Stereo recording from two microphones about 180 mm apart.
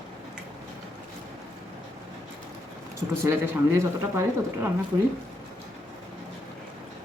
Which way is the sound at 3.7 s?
15° right (ahead or behind).